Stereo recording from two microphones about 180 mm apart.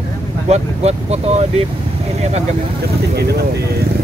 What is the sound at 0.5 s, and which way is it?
Speech, 35° right (ahead or behind).